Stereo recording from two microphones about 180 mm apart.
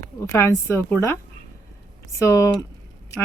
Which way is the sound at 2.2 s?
15° left (ahead or behind).